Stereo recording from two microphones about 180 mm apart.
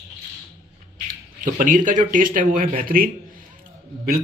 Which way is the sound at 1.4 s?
45° right (ahead or behind).